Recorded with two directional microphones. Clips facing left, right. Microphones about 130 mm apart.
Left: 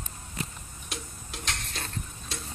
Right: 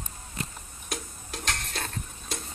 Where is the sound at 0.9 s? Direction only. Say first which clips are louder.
Right 4 dB; 45° right (ahead or behind).